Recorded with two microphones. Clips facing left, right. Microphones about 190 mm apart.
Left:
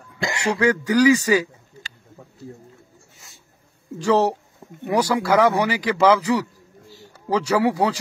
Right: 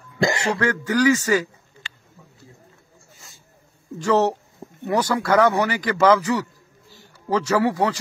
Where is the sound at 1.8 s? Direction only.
40° left (ahead or behind).